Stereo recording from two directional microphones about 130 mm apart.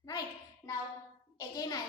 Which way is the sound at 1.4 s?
30° left (ahead or behind).